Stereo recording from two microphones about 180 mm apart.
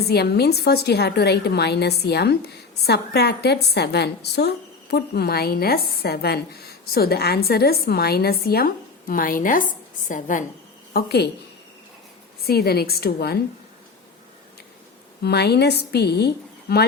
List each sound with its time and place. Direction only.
0.1 s a woman's voice: 65° left (ahead or behind); by 10.4 s 45° left (ahead or behind)
10.9 s a woman's voice: 65° left (ahead or behind)
12.5 s a woman's voice: 60° left (ahead or behind)
15.2 s a woman's voice: 65° left (ahead or behind)